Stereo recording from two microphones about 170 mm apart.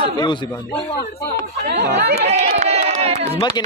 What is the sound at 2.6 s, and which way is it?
Crowd, 40° right (ahead or behind).